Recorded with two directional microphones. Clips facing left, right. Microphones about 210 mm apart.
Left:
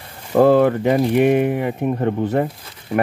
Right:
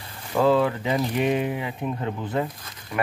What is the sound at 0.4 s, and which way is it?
Speech, 60° left (ahead or behind).